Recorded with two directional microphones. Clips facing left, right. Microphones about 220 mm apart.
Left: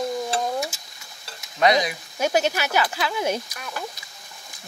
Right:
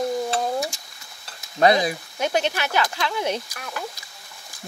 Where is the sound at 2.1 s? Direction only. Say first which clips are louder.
Left 3 dB; 10° left (ahead or behind).